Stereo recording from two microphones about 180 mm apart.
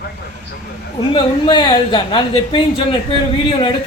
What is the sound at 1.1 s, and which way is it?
A woman's voice, 25° left (ahead or behind).